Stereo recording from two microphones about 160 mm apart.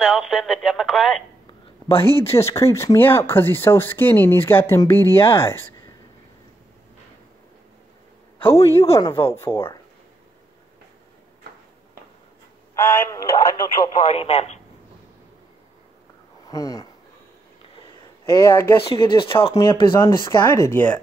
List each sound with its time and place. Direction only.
0.0 s speech: 5° right (ahead or behind)
1.9 s speech: 35° left (ahead or behind)
2.2 s speech: 15° left (ahead or behind)
8.4 s a man's voice: 15° left (ahead or behind)
12.7 s speech: 10° left (ahead or behind)
14.0 s speech: 40° left (ahead or behind)
16.4 s speech: 20° left (ahead or behind)
18.3 s speech: 20° left (ahead or behind)
18.9 s speech: 30° left (ahead or behind)
20.1 s speech: 15° left (ahead or behind)